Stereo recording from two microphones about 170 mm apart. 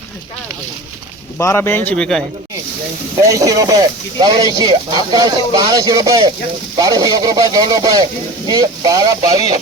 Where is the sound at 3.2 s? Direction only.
20° right (ahead or behind).